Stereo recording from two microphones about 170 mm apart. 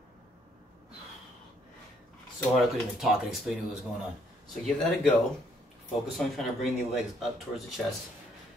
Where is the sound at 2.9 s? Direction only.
Centre (ahead or behind).